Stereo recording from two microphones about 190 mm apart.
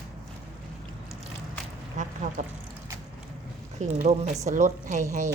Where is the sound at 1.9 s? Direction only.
40° right (ahead or behind).